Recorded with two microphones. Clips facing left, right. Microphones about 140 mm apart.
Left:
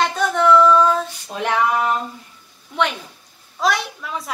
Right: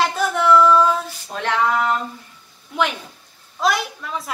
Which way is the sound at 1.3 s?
15° left (ahead or behind).